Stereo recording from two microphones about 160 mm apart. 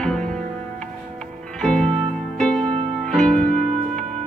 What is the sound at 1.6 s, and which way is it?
Music, 5° left (ahead or behind).